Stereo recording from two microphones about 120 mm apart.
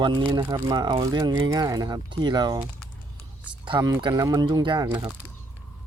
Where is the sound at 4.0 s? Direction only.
35° right (ahead or behind).